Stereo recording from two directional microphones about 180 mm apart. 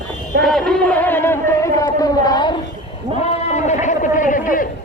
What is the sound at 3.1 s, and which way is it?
A man's voice, 40° left (ahead or behind).